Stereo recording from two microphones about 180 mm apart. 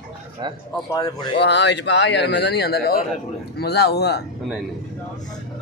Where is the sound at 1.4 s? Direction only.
75° left (ahead or behind).